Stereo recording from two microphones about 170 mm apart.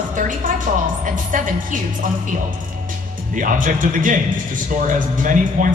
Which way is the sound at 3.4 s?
50° right (ahead or behind).